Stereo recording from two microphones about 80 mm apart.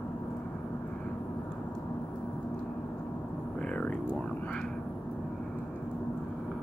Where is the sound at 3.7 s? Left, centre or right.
Centre.